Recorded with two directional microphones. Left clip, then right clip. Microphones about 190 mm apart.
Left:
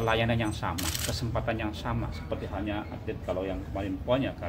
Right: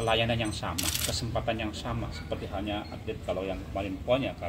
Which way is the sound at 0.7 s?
60° left (ahead or behind).